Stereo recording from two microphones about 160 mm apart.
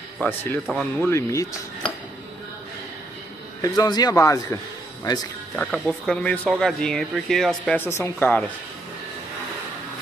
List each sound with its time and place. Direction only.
0.2 s speech: 10° left (ahead or behind)
3.6 s speech: 25° left (ahead or behind)
5.6 s speech: 5° left (ahead or behind)